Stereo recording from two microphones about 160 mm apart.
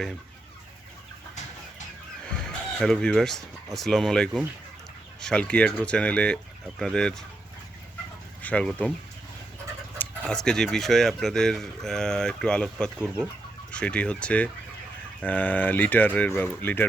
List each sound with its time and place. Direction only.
2.3 s speech: 5° left (ahead or behind)
8.4 s speech: 10° left (ahead or behind)
10.0 s speech: 5° left (ahead or behind)